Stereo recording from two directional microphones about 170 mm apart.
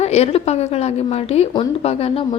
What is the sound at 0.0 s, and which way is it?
A woman's voice, 40° left (ahead or behind).